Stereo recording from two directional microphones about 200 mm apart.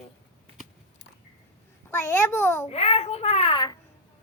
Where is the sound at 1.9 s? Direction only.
15° left (ahead or behind).